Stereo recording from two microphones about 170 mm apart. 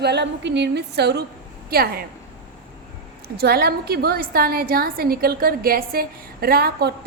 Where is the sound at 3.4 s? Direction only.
65° right (ahead or behind).